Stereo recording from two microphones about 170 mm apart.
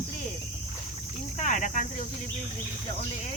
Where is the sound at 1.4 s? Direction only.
45° left (ahead or behind).